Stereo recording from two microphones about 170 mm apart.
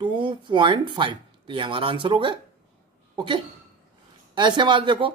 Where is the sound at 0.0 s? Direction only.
30° right (ahead or behind).